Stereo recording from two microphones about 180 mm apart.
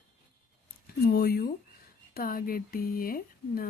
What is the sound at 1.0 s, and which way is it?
Speech, 60° left (ahead or behind).